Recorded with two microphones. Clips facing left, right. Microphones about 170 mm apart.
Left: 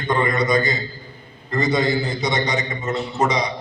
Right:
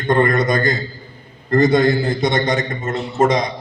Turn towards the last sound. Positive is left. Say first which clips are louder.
# right 4 dB
turn(degrees=-50)  # may be behind; listen again after turning